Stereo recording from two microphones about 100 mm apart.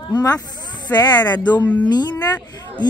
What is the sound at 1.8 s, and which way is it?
Speech, 45° left (ahead or behind).